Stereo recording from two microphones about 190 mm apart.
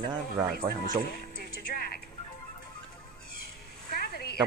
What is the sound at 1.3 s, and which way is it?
Music, 50° left (ahead or behind).